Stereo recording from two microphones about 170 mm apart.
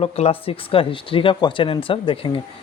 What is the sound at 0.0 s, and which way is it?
Speech, 35° left (ahead or behind).